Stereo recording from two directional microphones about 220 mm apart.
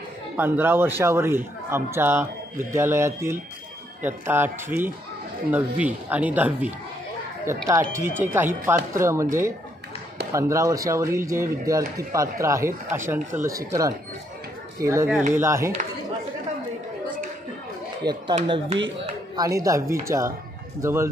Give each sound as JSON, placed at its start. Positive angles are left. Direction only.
{"t": 0.4, "sound": "a man's voice", "side_deg": -10}
{"t": 10.3, "sound": "a man's voice", "side_deg": -15}
{"t": 18.0, "sound": "a man's voice", "side_deg": -20}